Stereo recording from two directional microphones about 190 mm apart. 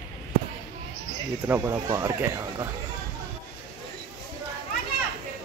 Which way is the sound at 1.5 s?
15° right (ahead or behind).